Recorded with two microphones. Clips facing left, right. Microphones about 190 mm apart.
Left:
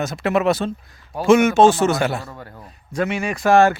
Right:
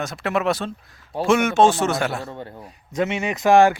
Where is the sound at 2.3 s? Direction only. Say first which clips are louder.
Right 3 dB; 25° right (ahead or behind).